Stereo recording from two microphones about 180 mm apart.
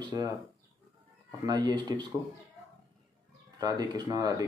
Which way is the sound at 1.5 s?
25° right (ahead or behind).